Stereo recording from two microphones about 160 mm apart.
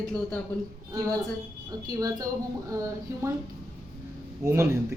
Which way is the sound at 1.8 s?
25° right (ahead or behind).